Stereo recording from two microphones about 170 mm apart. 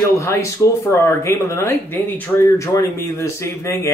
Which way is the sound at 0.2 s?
15° left (ahead or behind).